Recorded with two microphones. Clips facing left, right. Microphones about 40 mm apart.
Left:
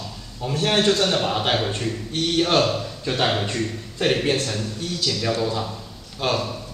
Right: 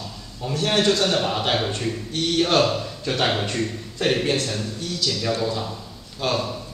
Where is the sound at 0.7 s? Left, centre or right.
Centre.